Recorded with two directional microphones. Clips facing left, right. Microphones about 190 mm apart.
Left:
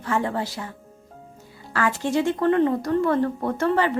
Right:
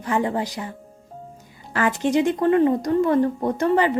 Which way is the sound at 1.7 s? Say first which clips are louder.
Right 3 dB; 20° right (ahead or behind).